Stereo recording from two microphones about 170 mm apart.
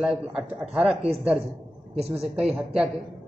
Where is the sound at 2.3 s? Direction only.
5° right (ahead or behind).